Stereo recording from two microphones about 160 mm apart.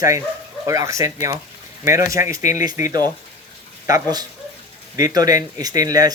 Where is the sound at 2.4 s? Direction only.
50° left (ahead or behind).